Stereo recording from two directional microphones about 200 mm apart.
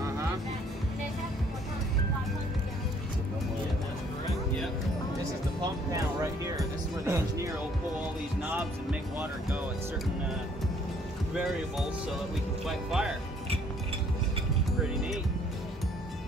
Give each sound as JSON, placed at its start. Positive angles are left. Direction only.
{"t": 5.6, "sound": "music", "side_deg": -15}
{"t": 12.6, "sound": "music", "side_deg": 0}